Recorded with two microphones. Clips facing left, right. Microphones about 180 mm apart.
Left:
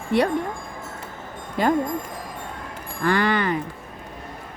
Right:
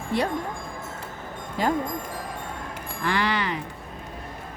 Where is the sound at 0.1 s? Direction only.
65° left (ahead or behind).